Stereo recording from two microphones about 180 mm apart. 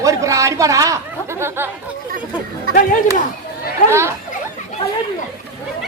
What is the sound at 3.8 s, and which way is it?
Speech, 15° right (ahead or behind).